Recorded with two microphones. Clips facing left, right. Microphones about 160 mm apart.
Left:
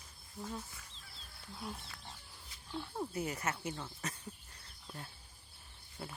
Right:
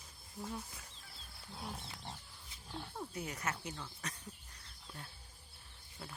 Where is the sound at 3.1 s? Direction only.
5° left (ahead or behind).